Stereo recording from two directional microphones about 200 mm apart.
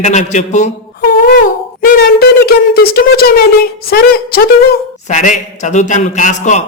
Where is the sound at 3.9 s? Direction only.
50° left (ahead or behind).